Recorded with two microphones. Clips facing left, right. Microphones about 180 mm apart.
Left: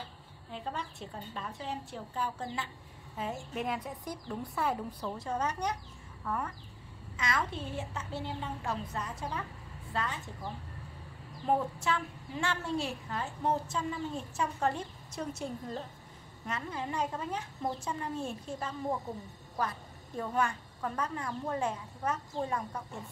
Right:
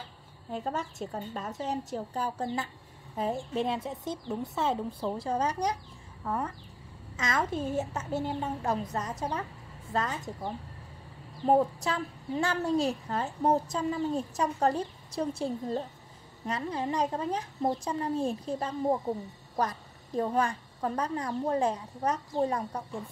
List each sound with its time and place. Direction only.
0.5 s a woman's voice: 45° right (ahead or behind)
7.2 s a woman's voice: 45° right (ahead or behind)